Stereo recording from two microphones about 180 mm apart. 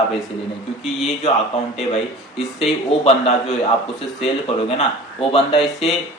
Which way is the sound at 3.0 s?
40° left (ahead or behind).